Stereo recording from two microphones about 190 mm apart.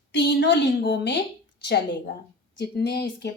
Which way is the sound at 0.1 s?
70° left (ahead or behind).